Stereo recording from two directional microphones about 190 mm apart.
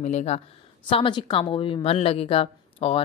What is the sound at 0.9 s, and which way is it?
A woman's voice, 25° left (ahead or behind).